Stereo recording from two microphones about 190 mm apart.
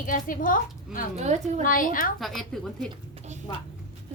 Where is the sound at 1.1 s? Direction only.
35° right (ahead or behind).